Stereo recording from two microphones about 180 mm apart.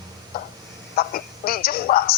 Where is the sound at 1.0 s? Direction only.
55° left (ahead or behind).